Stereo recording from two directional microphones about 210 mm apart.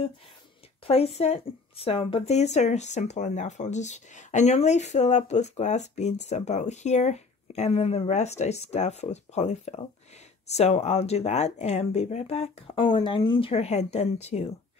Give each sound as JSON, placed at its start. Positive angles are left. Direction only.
{"t": 0.8, "sound": "speech", "side_deg": 30}